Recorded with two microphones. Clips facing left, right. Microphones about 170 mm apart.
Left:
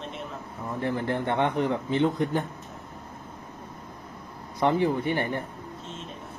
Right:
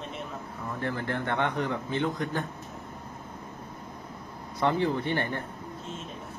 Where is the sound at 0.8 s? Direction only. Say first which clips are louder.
Left 4 dB; 20° left (ahead or behind).